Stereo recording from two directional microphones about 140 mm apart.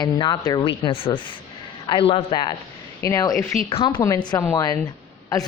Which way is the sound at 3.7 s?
35° left (ahead or behind).